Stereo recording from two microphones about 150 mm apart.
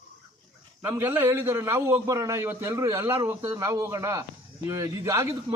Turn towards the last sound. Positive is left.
turn(degrees=-20)  # may be behind; listen again after turning